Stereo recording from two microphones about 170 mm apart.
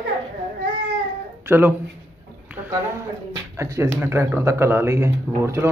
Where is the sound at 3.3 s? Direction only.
20° right (ahead or behind).